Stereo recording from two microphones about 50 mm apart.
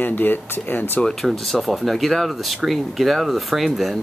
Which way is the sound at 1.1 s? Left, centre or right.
Centre.